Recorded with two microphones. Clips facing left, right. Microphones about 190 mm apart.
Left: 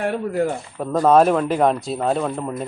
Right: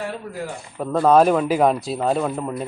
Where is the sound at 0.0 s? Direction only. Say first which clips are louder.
Left 8 dB; 60° left (ahead or behind).